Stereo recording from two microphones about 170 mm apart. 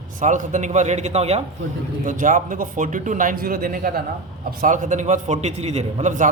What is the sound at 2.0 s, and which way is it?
A man's voice, 50° right (ahead or behind).